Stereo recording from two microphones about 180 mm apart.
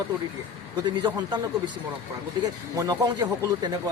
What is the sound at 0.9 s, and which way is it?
Speech, 25° right (ahead or behind).